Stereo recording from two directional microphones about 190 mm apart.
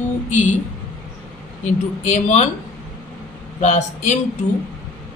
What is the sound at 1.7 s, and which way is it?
Speech, 40° left (ahead or behind).